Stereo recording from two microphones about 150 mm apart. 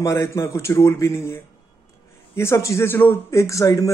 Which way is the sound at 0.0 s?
20° left (ahead or behind).